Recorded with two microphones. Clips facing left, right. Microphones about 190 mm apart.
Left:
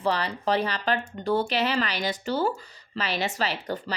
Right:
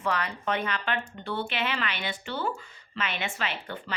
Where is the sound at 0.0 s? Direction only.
35° left (ahead or behind).